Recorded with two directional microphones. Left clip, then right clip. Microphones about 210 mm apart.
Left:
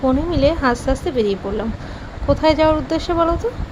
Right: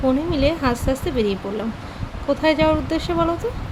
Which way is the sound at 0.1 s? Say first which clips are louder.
Left 3 dB; 5° left (ahead or behind).